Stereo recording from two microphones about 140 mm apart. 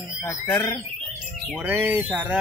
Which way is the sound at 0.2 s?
20° left (ahead or behind).